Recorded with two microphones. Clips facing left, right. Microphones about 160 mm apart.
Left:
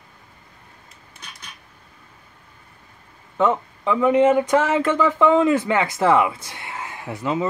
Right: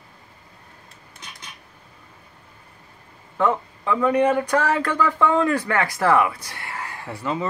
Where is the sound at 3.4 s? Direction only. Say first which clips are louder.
Left 2 dB; 20° left (ahead or behind).